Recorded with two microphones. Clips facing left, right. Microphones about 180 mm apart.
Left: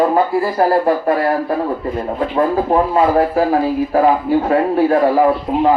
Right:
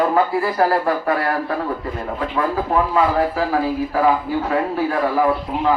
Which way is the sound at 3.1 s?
45° left (ahead or behind).